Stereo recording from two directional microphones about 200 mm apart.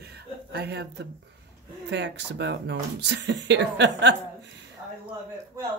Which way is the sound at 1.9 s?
60° right (ahead or behind).